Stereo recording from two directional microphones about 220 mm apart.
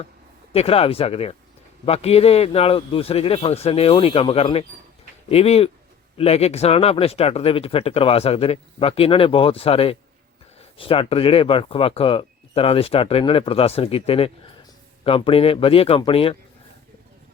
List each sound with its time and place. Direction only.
0.5 s speech: 25° left (ahead or behind)